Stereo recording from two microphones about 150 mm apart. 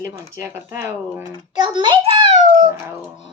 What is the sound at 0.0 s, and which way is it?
Speech, 20° right (ahead or behind).